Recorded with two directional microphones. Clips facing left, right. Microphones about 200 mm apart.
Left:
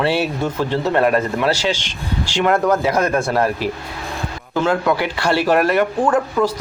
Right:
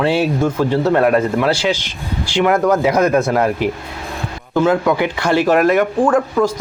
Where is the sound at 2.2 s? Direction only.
5° right (ahead or behind).